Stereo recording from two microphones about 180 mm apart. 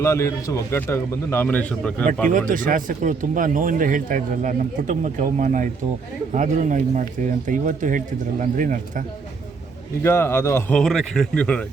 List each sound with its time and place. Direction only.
0.0 s a man's voice: 15° left (ahead or behind)
2.5 s speech: 50° right (ahead or behind)
10.0 s a man's voice: 15° left (ahead or behind)
10.8 s speech: 5° left (ahead or behind)